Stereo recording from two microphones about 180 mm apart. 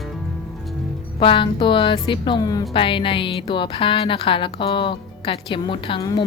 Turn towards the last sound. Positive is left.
turn(degrees=25)  # may be behind; listen again after turning